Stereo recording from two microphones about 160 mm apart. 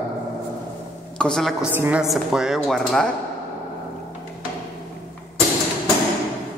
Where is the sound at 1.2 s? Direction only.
5° left (ahead or behind).